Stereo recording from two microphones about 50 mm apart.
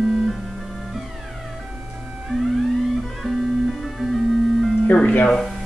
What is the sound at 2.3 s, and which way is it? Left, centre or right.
Music, centre.